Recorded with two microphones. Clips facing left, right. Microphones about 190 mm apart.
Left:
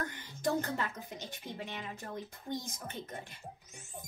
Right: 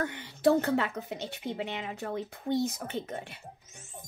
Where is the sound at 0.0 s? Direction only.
70° right (ahead or behind).